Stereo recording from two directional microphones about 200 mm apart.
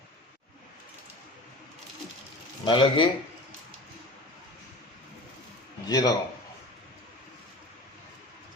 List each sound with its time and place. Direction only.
2.6 s speech: 25° left (ahead or behind)
5.9 s speech: 20° left (ahead or behind)